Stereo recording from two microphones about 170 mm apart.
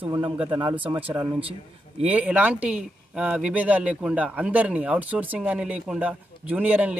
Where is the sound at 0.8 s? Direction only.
10° right (ahead or behind).